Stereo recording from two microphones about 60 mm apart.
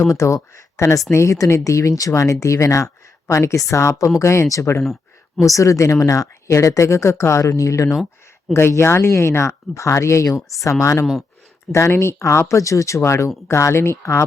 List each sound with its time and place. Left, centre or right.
0.0 s speech: left
8.5 s speech: left
11.0 s speech: centre
11.7 s speech: left